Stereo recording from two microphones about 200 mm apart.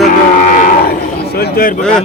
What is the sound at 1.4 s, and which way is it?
Speech, 50° left (ahead or behind).